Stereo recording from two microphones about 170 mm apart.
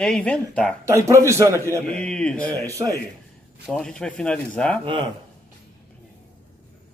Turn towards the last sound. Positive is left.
turn(degrees=-30)  # may be behind; listen again after turning